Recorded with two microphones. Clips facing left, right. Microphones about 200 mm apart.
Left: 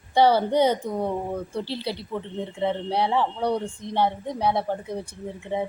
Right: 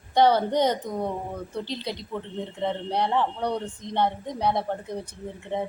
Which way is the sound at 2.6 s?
10° left (ahead or behind).